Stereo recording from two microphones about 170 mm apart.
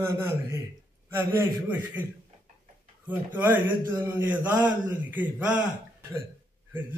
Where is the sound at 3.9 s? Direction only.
10° right (ahead or behind).